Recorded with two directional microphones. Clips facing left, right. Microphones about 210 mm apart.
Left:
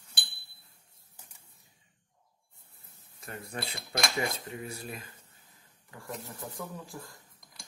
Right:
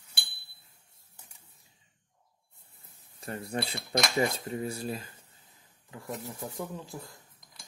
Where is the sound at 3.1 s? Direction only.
35° right (ahead or behind).